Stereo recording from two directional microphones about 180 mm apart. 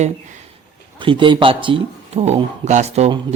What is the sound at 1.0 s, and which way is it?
Speech, 30° right (ahead or behind).